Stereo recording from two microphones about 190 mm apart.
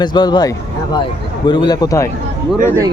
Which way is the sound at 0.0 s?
20° left (ahead or behind).